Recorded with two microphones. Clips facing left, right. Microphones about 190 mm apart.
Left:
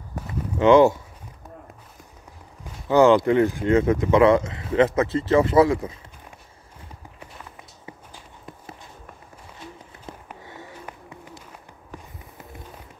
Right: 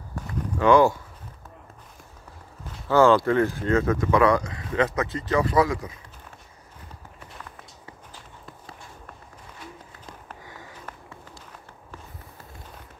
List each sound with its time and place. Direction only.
0.1 s walk: 20° left (ahead or behind)
2.9 s speech: 20° left (ahead or behind)